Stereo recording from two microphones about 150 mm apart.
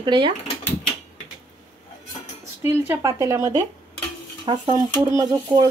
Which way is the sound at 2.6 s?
15° right (ahead or behind).